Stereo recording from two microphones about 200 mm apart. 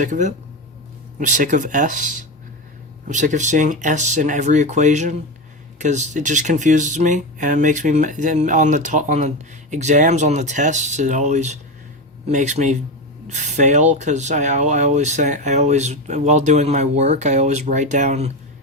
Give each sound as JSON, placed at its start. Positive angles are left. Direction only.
{"t": 0.0, "sound": "speech", "side_deg": -40}